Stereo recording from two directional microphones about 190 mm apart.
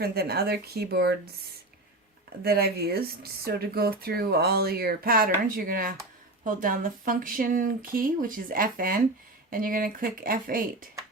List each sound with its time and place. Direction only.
0.0 s speech: 55° right (ahead or behind)
2.4 s speech: 55° right (ahead or behind)